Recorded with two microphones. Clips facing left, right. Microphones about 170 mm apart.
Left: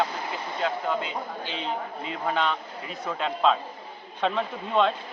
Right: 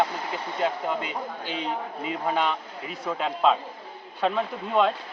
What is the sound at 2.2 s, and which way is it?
Speech, 10° right (ahead or behind).